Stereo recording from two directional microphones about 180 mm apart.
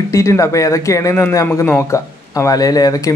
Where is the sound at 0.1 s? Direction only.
15° left (ahead or behind).